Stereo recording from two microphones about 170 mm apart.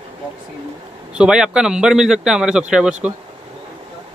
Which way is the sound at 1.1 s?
5° right (ahead or behind).